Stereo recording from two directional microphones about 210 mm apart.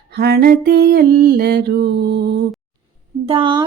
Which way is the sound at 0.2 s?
50° right (ahead or behind).